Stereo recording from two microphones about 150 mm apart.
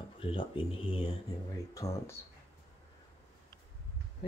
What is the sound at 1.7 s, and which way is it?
Speech, 20° left (ahead or behind).